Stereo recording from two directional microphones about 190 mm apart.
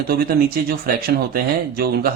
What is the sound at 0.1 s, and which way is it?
A man's voice, 50° right (ahead or behind).